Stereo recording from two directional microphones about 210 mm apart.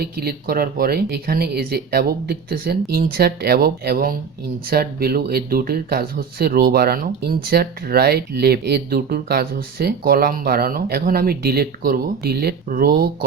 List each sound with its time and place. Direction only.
0.0 s speech: 50° right (ahead or behind)